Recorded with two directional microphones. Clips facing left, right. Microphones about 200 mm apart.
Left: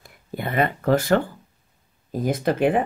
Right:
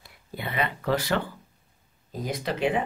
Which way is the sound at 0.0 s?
50° left (ahead or behind).